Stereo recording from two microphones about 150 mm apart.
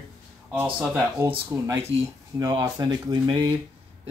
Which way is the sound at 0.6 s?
10° right (ahead or behind).